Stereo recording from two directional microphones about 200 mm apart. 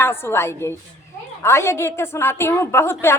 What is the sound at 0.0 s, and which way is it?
A woman's voice, 10° left (ahead or behind).